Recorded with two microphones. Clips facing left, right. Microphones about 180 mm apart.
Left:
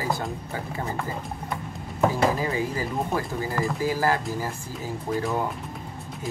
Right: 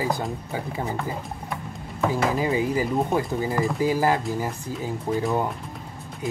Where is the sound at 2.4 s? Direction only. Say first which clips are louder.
Right 4 dB; 20° right (ahead or behind).